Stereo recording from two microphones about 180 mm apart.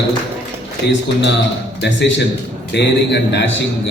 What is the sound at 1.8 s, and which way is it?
A man's voice, 80° left.